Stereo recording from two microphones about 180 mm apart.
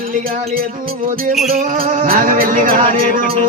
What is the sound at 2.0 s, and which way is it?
Speech, 50° right (ahead or behind).